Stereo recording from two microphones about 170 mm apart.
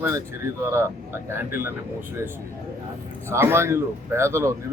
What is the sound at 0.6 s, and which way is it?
Speech, 15° right (ahead or behind).